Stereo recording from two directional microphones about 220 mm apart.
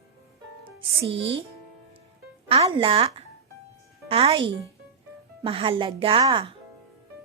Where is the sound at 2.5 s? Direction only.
25° right (ahead or behind).